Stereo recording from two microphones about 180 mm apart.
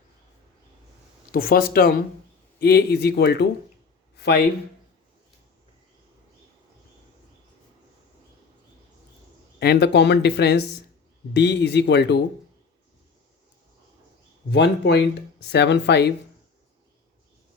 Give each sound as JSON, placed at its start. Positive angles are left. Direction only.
{"t": 1.3, "sound": "speech", "side_deg": 55}
{"t": 9.6, "sound": "speech", "side_deg": 65}
{"t": 14.5, "sound": "speech", "side_deg": 70}